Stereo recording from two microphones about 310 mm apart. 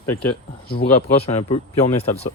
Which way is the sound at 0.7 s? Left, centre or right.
Left.